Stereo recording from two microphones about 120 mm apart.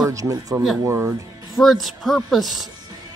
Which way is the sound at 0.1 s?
30° right (ahead or behind).